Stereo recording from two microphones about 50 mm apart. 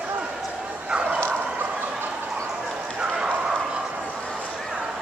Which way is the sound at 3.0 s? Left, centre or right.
Right.